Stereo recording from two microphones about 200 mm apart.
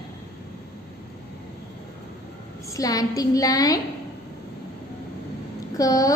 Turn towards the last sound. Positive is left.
turn(degrees=15)  # may be behind; listen again after turning